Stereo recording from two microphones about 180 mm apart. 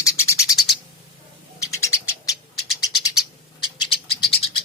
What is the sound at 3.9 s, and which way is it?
Bird, 30° left (ahead or behind).